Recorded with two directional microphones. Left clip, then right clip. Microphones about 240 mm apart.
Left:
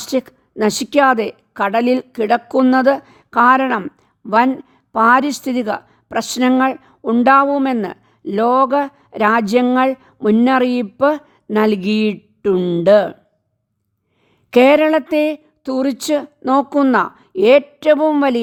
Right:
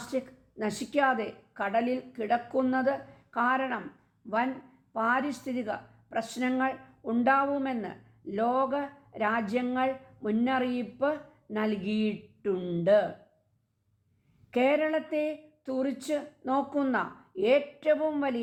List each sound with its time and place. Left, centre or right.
0.0 s a woman's voice: left
4.9 s a woman's voice: left
14.5 s a woman's voice: left